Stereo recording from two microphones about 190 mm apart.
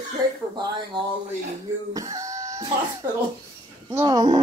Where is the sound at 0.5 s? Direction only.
20° right (ahead or behind).